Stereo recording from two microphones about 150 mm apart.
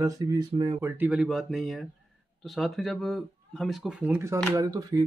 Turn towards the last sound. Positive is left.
turn(degrees=-25)  # may be behind; listen again after turning